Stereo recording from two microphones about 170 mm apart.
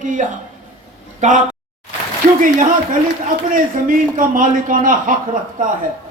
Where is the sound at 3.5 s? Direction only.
55° right (ahead or behind).